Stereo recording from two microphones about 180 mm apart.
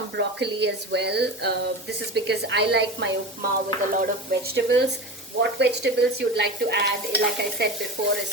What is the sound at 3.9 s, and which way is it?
Stir, 50° right (ahead or behind).